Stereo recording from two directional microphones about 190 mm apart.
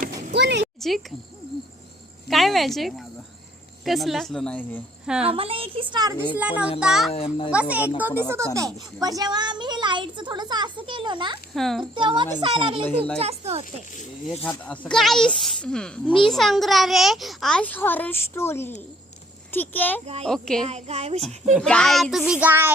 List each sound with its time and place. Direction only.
0.3 s a sound: 65° right (ahead or behind)
0.8 s speech: centre (ahead or behind)
2.2 s a child's voice: centre (ahead or behind)
5.2 s a woman's voice: 30° right (ahead or behind)
6.3 s a child's voice: 5° right (ahead or behind)
7.1 s a child's voice: 30° left (ahead or behind)
7.5 s a child's voice: 5° right (ahead or behind)
8.5 s speech: 20° right (ahead or behind)
11.5 s a child's voice: centre (ahead or behind)
11.9 s a woman's voice: 25° right (ahead or behind)
14.6 s a child's voice: 5° left (ahead or behind)
20.7 s a woman's voice: 35° right (ahead or behind)
21.5 s a child's voice: 5° left (ahead or behind)